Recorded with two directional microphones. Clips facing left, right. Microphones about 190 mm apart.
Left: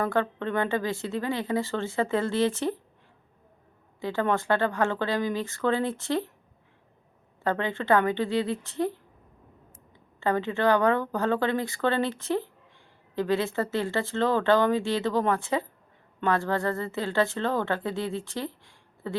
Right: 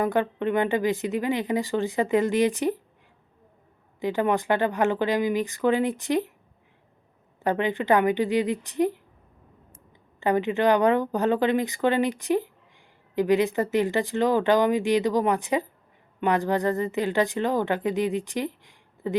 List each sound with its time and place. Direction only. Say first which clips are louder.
0.0 s speech: right 3 dB; 15° right (ahead or behind)
4.0 s speech: right 3 dB; 15° right (ahead or behind)
7.4 s speech: right 3 dB; 15° right (ahead or behind)
10.2 s speech: right 3 dB; 15° right (ahead or behind)